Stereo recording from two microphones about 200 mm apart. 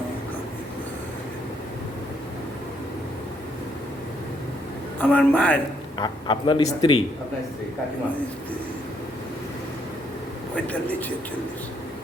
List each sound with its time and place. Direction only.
4.9 s a man's voice: 10° left (ahead or behind)
6.0 s a man's voice: 20° left (ahead or behind)
10.5 s a man's voice: 5° left (ahead or behind)